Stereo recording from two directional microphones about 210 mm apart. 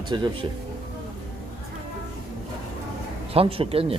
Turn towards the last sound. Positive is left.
turn(degrees=-25)  # may be behind; listen again after turning